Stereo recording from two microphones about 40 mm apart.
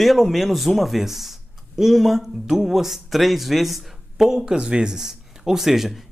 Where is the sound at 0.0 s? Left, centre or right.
Centre.